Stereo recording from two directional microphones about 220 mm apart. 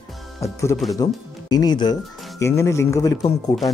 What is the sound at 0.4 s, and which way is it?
Speech, 15° left (ahead or behind).